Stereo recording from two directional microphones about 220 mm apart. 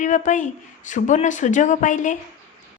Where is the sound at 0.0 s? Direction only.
35° left (ahead or behind).